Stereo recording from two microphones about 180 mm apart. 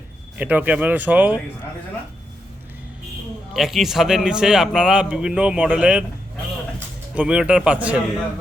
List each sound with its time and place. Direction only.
0.3 s speech: 10° right (ahead or behind)
3.5 s a man's voice: centre (ahead or behind)
7.2 s a man's voice: 5° right (ahead or behind)